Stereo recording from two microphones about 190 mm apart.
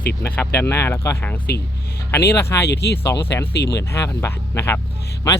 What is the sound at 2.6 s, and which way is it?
Speech, 60° left (ahead or behind).